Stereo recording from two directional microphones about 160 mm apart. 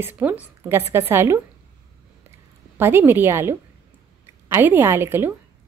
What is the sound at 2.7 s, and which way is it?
Speech, 15° right (ahead or behind).